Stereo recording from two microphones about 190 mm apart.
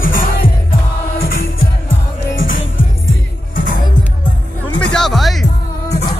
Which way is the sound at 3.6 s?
45° left (ahead or behind).